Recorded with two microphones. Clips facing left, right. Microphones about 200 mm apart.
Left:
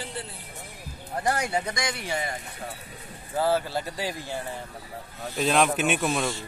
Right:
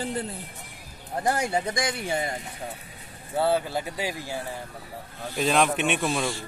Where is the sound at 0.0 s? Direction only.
45° right (ahead or behind).